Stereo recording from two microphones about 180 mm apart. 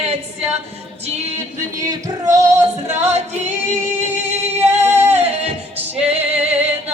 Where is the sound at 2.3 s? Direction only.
20° right (ahead or behind).